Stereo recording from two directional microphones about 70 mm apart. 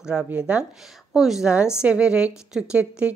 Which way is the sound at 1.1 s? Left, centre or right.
Centre.